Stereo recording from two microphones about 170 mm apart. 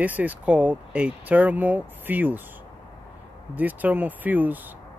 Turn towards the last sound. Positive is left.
turn(degrees=-10)  # may be behind; listen again after turning